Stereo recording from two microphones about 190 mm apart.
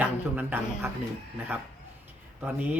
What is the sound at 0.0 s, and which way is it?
Speech, 10° right (ahead or behind).